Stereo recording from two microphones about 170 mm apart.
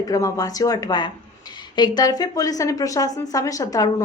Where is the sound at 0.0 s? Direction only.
20° left (ahead or behind).